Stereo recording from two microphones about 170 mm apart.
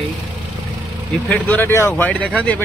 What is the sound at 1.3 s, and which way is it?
Speech, 10° left (ahead or behind).